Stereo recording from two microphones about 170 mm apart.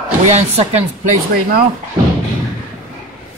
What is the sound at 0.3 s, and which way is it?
Speech, 40° right (ahead or behind).